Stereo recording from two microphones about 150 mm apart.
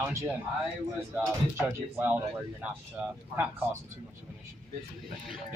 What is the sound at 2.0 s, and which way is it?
Speech, 15° right (ahead or behind).